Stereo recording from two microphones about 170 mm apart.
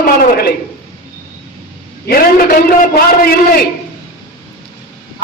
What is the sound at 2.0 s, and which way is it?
A man's voice, 60° left (ahead or behind).